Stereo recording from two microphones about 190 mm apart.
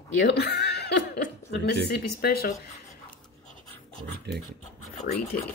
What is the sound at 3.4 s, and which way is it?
Pant, 40° left (ahead or behind).